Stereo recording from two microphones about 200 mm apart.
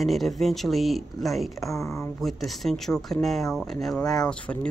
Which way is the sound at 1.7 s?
15° left (ahead or behind).